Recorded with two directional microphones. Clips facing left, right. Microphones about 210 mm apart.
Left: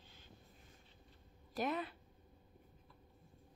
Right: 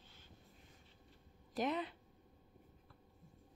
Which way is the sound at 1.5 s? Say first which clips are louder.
Right 1 dB; 20° right (ahead or behind).